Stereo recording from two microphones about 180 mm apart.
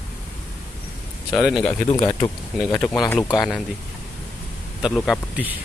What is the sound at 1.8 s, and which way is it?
Speech, 25° left (ahead or behind).